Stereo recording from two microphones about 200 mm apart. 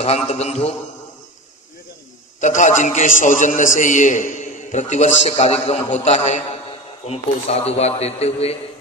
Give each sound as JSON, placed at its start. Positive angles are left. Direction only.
{"t": 0.3, "sound": "a man's voice", "side_deg": 35}
{"t": 2.4, "sound": "a man's voice", "side_deg": 40}